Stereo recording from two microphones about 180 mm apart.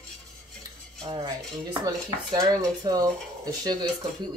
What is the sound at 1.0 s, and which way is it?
Cutlery, 25° right (ahead or behind).